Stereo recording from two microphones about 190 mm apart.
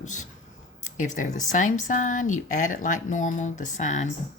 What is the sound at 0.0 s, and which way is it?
Speech, 40° left (ahead or behind).